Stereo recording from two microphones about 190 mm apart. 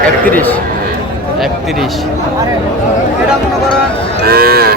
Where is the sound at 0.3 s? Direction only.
10° left (ahead or behind).